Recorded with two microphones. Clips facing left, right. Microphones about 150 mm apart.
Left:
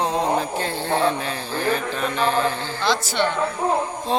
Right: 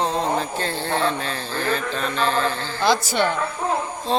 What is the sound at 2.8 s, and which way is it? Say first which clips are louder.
Speech: right 2 dB; 10° right (ahead or behind).